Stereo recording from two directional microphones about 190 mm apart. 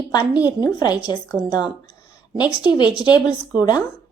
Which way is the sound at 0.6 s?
20° left (ahead or behind).